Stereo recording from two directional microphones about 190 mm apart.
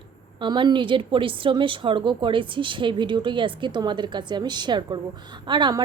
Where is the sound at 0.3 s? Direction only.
25° right (ahead or behind).